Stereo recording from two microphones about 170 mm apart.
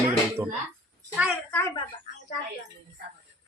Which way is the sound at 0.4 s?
10° right (ahead or behind).